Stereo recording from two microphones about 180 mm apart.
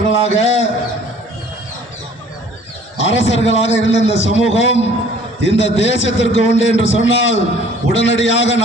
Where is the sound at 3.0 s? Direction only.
90° left.